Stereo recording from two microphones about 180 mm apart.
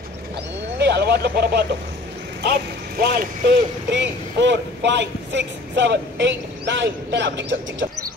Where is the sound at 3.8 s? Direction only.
80° right.